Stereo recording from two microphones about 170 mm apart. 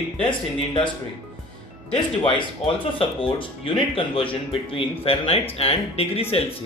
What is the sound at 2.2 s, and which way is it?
Speech, 30° left (ahead or behind).